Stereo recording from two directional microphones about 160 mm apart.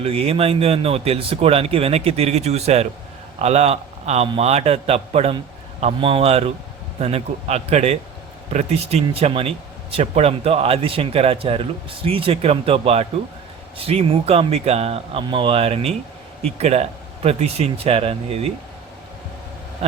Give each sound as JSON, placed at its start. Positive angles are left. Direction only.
{"t": 0.0, "sound": "a man's voice", "side_deg": -35}